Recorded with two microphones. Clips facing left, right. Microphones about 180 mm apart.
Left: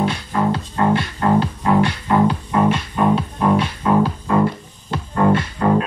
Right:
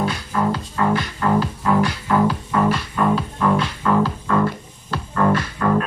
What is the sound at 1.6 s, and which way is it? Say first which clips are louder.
Music: left 2 dB; 20° left (ahead or behind).